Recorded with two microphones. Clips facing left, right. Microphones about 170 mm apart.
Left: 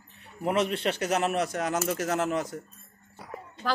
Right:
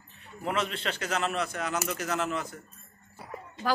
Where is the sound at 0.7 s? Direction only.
50° left (ahead or behind).